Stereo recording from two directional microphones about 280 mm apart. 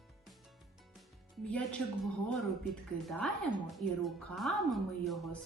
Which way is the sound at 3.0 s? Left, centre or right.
Centre.